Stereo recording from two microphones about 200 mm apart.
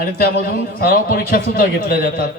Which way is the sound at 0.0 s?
45° left (ahead or behind).